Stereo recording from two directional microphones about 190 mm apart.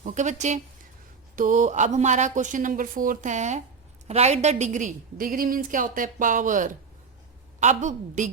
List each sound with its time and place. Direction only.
0.0 s a woman's voice: 40° right (ahead or behind)